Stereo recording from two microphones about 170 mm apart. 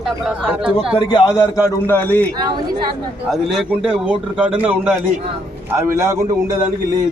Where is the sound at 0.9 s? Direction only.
30° left (ahead or behind).